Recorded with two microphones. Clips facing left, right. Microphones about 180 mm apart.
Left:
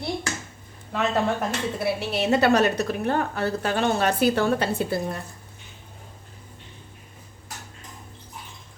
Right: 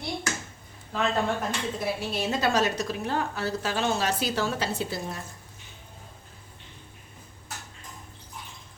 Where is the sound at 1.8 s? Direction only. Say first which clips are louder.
Left 6 dB; 65° left (ahead or behind).